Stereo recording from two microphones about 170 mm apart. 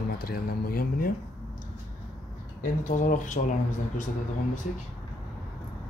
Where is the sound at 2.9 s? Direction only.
45° left (ahead or behind).